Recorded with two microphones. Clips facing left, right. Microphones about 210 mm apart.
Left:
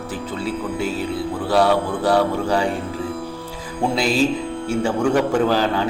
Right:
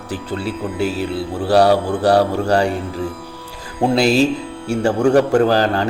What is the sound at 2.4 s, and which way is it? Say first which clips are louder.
Speech: right 4 dB; 70° right (ahead or behind).